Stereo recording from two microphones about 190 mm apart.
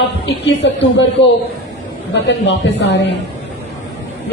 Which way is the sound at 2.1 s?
70° left (ahead or behind).